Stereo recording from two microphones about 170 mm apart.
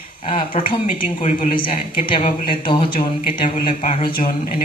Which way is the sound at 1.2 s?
45° left (ahead or behind).